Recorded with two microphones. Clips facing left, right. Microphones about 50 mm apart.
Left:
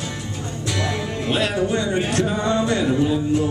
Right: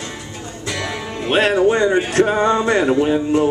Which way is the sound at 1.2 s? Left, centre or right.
Right.